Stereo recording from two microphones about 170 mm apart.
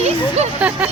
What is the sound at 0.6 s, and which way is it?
Music, 5° right (ahead or behind).